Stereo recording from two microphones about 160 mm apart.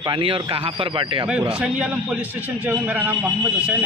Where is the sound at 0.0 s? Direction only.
30° right (ahead or behind).